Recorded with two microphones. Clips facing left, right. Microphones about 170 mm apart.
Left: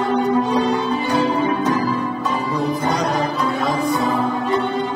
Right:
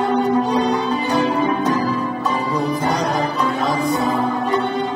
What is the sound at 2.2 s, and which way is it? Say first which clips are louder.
Music: right 1 dB; 35° right (ahead or behind).